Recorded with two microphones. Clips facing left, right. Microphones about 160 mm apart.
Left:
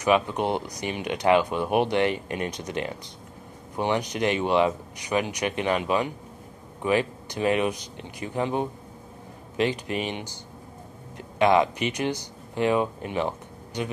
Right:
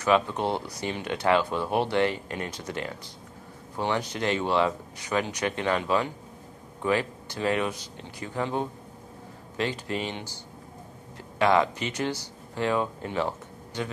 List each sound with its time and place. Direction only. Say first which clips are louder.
0.0 s speech: left 1 dB; 15° left (ahead or behind)